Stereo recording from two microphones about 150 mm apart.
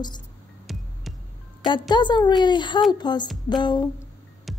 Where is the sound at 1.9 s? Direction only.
30° left (ahead or behind).